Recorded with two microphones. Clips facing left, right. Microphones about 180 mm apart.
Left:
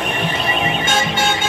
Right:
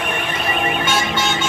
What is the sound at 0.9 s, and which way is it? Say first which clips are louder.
Music: left 1 dB; 55° left (ahead or behind).